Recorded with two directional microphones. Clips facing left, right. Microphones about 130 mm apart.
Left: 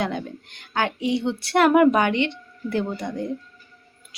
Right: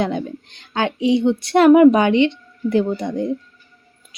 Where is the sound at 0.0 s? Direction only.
20° right (ahead or behind).